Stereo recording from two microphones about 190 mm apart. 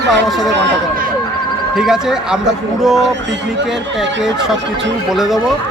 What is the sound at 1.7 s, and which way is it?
Speech, centre (ahead or behind).